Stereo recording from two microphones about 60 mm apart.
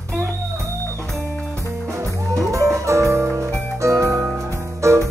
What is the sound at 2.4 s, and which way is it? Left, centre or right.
Music, right.